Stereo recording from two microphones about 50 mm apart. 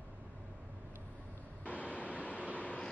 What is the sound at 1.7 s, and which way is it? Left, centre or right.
Vehicle, left.